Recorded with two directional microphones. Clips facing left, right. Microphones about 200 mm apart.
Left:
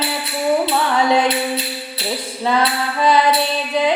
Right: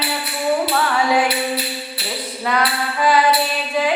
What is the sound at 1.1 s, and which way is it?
Music, 20° left (ahead or behind).